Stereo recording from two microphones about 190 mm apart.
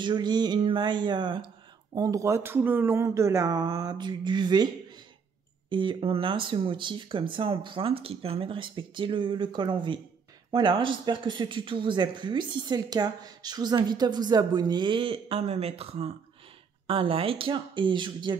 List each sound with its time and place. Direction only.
0.0 s speech: 20° right (ahead or behind)
5.7 s speech: 25° right (ahead or behind)